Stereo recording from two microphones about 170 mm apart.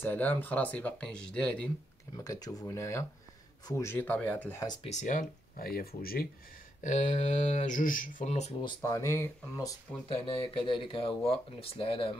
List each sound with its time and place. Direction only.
0.0 s speech: 10° left (ahead or behind)
2.1 s speech: 20° left (ahead or behind)
4.8 s speech: 45° left (ahead or behind); by 6.2 s 60° left (ahead or behind)
6.8 s speech: 45° left (ahead or behind)
8.8 s speech: 15° left (ahead or behind)
10.0 s speech: 30° left (ahead or behind)